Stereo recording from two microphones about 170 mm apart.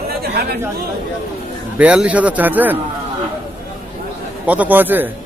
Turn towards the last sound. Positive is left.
turn(degrees=-10)  # may be behind; listen again after turning